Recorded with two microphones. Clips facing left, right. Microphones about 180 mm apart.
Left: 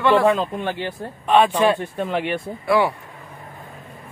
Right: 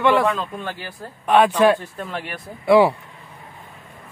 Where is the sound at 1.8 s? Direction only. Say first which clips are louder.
Left 7 dB; 30° left (ahead or behind).